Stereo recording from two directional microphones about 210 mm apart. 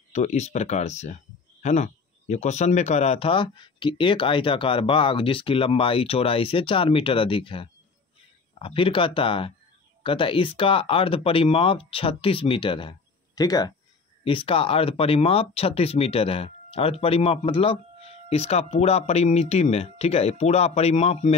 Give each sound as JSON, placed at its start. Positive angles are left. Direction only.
{"t": 0.1, "sound": "speech", "side_deg": 35}